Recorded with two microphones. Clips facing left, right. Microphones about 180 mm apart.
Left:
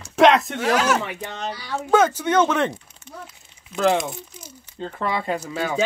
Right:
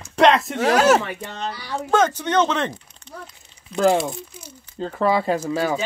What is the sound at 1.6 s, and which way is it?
Speech, 5° left (ahead or behind).